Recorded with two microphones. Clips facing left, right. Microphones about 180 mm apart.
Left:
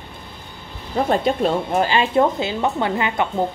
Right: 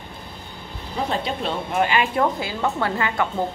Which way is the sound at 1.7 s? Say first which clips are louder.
Left 1 dB; 30° left (ahead or behind).